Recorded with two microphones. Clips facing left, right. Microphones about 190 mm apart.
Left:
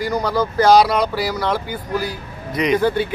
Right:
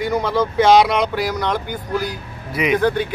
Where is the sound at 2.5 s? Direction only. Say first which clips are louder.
Left 1 dB; 5° right (ahead or behind).